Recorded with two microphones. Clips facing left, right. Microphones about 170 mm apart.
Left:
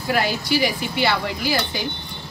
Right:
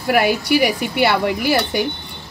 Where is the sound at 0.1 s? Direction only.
60° right (ahead or behind).